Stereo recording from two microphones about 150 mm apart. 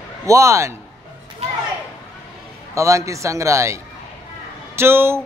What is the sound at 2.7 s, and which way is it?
A man's voice, 20° right (ahead or behind).